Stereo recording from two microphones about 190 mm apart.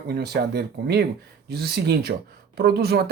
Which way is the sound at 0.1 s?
55° right (ahead or behind).